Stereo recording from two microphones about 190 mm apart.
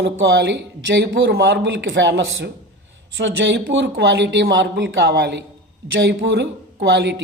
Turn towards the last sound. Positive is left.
turn(degrees=-60)  # may be behind; listen again after turning